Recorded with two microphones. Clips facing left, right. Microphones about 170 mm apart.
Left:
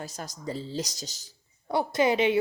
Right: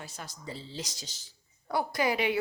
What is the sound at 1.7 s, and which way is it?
Speech, 25° left (ahead or behind).